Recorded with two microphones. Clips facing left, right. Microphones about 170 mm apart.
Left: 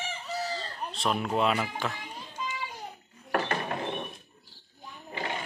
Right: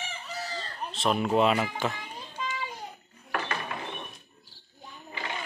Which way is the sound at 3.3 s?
40° left (ahead or behind).